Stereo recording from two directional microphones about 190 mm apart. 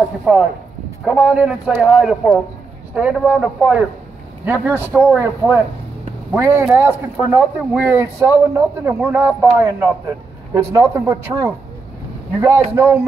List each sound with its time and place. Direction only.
0.2 s speech: 5° right (ahead or behind)